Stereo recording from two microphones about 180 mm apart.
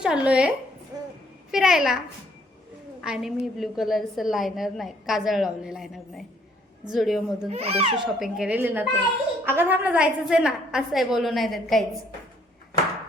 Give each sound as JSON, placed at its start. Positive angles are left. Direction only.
{"t": 0.0, "sound": "a woman's voice", "side_deg": -5}
{"t": 0.9, "sound": "a sound", "side_deg": -20}
{"t": 1.5, "sound": "a woman's voice", "side_deg": 0}
{"t": 3.0, "sound": "a woman's voice", "side_deg": -5}
{"t": 7.5, "sound": "a child's voice", "side_deg": -35}
{"t": 8.0, "sound": "a woman's voice", "side_deg": -5}